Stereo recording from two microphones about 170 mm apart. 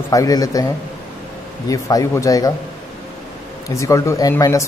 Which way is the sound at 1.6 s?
20° left (ahead or behind).